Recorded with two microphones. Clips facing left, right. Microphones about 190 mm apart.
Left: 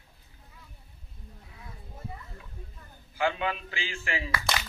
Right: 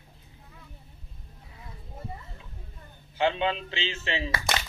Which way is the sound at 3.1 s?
25° right (ahead or behind).